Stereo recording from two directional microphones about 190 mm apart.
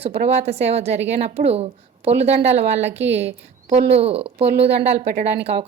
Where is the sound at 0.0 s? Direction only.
35° right (ahead or behind).